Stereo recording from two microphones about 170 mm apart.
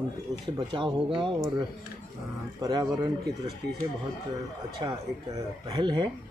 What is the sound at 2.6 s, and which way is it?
Speech, 20° right (ahead or behind).